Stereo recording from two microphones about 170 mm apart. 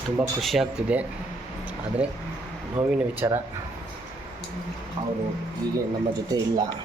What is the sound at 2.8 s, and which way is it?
Speech, 40° right (ahead or behind).